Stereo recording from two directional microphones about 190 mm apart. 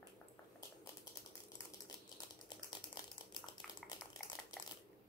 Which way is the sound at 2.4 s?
20° left (ahead or behind).